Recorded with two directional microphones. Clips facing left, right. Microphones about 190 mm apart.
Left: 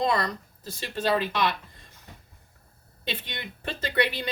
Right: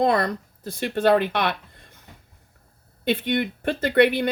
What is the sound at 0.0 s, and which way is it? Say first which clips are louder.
Speech: right 5 dB; 55° right (ahead or behind).